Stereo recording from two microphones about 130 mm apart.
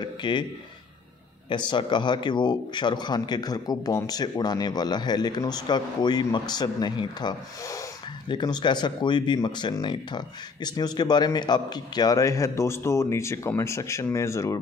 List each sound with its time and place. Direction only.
0.0 s a man's voice: 35° left (ahead or behind)
1.5 s speech: 35° left (ahead or behind)